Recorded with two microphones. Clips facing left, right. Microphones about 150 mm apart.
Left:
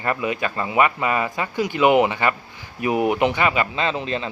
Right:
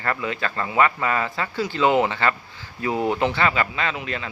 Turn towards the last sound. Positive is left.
turn(degrees=25)  # may be behind; listen again after turning